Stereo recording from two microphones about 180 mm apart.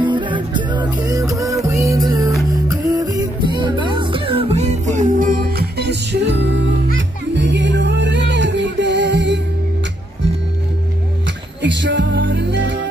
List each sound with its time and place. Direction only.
0.0 s music: 25° right (ahead or behind); by 9.4 s 75° right (ahead or behind)
11.2 s music: 80° right